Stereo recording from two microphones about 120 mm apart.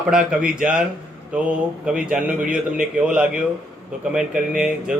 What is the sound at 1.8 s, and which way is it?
Speech, 5° right (ahead or behind).